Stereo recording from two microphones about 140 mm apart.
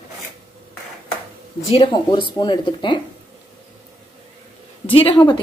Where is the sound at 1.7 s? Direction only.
40° left (ahead or behind).